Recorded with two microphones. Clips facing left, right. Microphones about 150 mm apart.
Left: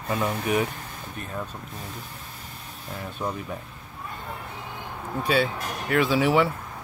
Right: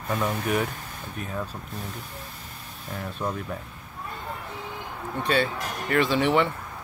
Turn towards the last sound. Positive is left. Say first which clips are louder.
# left 1 dB
turn(degrees=5)  # may be behind; listen again after turning